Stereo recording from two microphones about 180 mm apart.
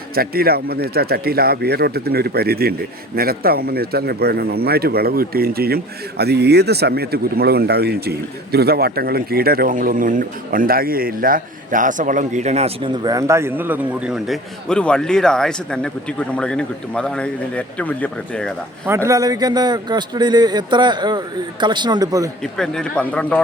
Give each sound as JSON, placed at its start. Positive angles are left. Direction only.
{"t": 0.1, "sound": "a man's voice", "side_deg": -55}
{"t": 18.9, "sound": "a man's voice", "side_deg": -15}
{"t": 22.5, "sound": "speech", "side_deg": 5}